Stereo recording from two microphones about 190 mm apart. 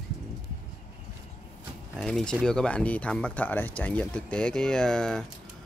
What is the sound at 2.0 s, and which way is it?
Speech, 5° left (ahead or behind).